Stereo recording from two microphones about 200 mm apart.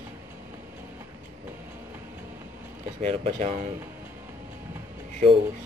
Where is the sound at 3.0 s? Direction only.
35° right (ahead or behind).